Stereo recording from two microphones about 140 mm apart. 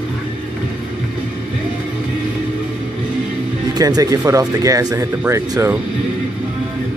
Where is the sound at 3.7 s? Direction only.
25° right (ahead or behind).